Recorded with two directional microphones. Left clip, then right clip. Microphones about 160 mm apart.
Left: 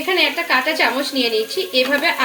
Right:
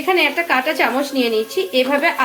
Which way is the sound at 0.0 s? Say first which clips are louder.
Right 1 dB; 20° right (ahead or behind).